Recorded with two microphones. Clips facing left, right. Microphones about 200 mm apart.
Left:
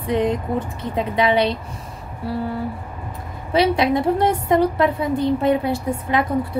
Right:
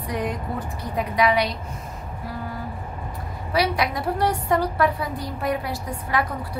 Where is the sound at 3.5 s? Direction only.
25° left (ahead or behind).